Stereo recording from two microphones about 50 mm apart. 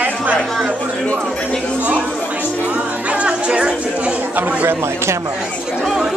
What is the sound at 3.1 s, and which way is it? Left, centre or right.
Chatter, right.